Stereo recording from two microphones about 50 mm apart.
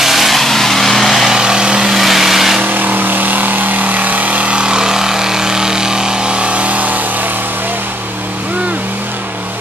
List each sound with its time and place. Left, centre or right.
0.0 s vehicle: centre
1.3 s vehicle: centre
2.0 s vehicle: centre
2.6 s vehicle: right